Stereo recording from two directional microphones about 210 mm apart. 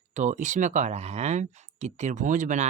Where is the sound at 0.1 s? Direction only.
35° right (ahead or behind).